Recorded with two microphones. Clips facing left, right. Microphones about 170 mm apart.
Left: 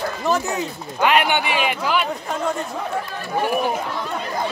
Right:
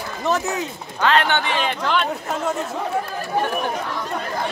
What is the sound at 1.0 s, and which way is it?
Speech, 10° left (ahead or behind).